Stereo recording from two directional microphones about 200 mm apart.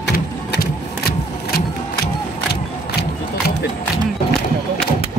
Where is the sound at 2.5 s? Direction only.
55° left (ahead or behind).